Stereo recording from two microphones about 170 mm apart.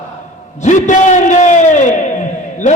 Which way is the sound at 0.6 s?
45° left (ahead or behind).